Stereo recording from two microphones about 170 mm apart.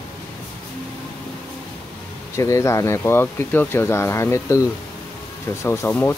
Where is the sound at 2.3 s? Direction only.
15° left (ahead or behind).